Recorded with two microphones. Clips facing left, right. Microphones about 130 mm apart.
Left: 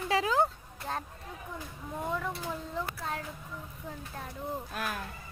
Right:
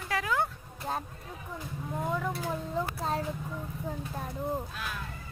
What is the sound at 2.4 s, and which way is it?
Speech, 30° right (ahead or behind).